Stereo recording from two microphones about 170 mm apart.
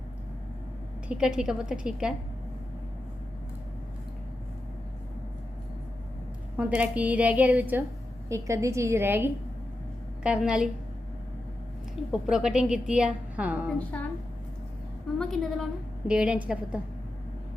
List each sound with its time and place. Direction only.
1.0 s a woman's voice: 5° right (ahead or behind)
6.6 s a woman's voice: 5° right (ahead or behind)
12.1 s a woman's voice: 5° right (ahead or behind)
15.2 s a woman's voice: centre (ahead or behind)